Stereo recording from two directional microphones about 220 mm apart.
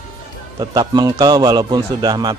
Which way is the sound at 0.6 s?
20° right (ahead or behind).